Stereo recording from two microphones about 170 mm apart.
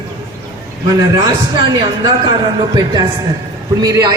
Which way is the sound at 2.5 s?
25° right (ahead or behind).